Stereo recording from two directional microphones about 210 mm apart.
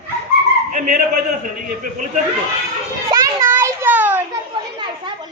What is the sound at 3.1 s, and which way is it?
Children playing, 15° right (ahead or behind).